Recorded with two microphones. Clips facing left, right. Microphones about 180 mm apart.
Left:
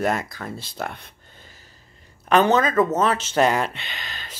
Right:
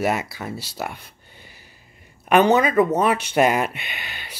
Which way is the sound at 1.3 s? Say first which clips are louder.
Right 1 dB; 10° right (ahead or behind).